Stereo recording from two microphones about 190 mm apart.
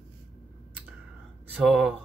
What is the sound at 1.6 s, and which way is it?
Speech, 5° right (ahead or behind).